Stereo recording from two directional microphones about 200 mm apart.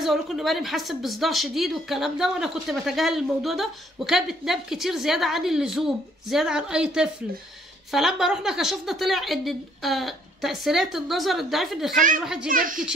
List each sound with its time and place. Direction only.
0.0 s a woman's voice: centre (ahead or behind)
12.4 s speech: 45° right (ahead or behind)